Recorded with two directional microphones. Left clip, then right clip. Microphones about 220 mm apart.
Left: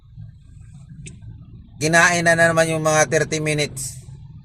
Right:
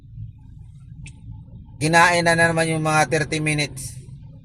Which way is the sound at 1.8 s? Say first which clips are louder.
Even; 15° left (ahead or behind).